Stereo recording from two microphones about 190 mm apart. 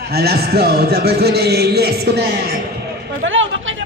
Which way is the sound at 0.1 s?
55° right (ahead or behind).